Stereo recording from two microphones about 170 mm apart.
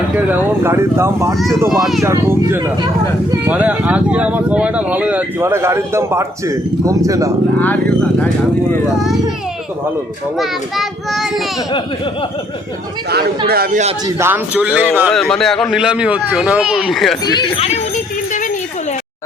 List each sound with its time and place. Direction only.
0.2 s speech: 15° right (ahead or behind)
1.8 s speech: centre (ahead or behind)
2.0 s speech: 15° right (ahead or behind)
10.3 s speech: centre (ahead or behind)
13.1 s speech: 70° right (ahead or behind)
14.2 s speech: 10° right (ahead or behind)
15.1 s speech: 5° left (ahead or behind)
17.2 s speech: 25° left (ahead or behind)